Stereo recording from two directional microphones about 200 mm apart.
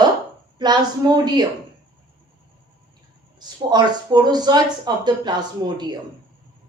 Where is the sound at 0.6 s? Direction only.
20° right (ahead or behind).